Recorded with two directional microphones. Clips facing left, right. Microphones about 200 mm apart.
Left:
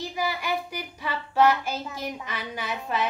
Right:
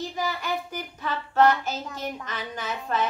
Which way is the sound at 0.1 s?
10° left (ahead or behind).